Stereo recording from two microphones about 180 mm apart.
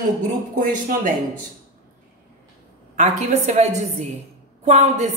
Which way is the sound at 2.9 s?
40° right (ahead or behind).